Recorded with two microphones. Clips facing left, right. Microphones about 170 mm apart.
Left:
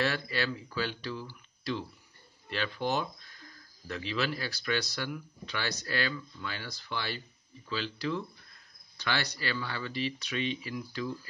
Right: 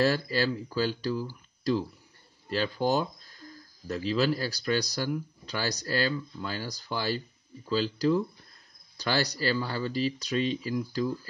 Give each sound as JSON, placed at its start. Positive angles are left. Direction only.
{"t": 0.0, "sound": "speech", "side_deg": -35}